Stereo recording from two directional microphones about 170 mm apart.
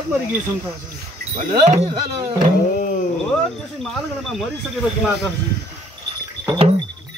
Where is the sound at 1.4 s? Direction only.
45° right (ahead or behind).